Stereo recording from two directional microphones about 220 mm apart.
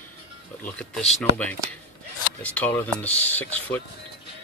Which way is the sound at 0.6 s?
5° left (ahead or behind).